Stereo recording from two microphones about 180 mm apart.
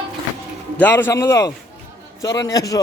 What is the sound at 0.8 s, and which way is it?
A man's voice, 10° left (ahead or behind).